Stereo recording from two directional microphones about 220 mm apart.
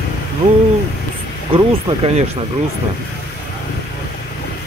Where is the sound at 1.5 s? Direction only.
25° right (ahead or behind).